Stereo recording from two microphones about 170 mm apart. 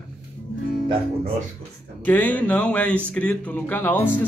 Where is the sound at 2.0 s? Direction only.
10° left (ahead or behind).